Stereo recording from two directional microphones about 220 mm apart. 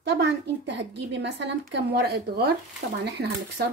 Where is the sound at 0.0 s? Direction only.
50° right (ahead or behind).